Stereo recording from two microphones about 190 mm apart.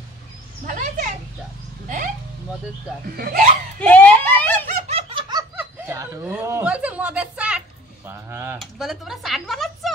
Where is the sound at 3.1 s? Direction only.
50° right (ahead or behind).